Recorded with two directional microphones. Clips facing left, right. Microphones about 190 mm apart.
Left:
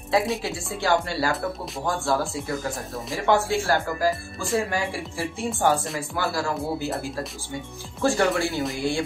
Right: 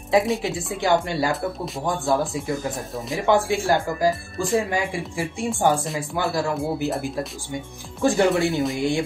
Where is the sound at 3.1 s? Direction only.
15° right (ahead or behind).